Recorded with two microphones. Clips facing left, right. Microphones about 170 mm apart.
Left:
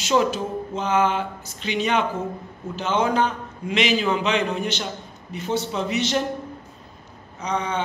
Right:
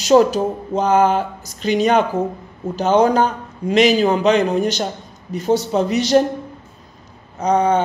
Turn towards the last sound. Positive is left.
turn(degrees=-45)  # may be behind; listen again after turning